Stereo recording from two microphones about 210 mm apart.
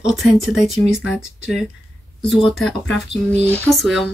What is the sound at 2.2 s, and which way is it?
Speech, centre (ahead or behind).